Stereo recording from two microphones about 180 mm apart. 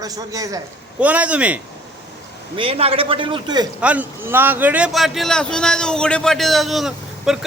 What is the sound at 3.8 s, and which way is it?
A man's voice, 10° right (ahead or behind).